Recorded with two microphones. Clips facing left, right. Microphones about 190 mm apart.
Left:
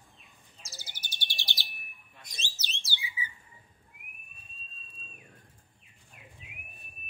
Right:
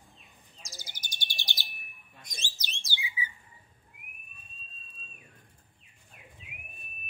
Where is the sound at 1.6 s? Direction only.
Centre (ahead or behind).